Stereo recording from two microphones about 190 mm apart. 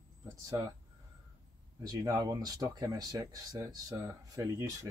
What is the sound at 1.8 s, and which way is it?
Speech, 20° right (ahead or behind).